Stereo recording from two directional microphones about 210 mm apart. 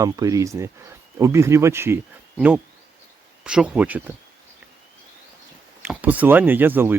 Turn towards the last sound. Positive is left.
turn(degrees=-10)  # may be behind; listen again after turning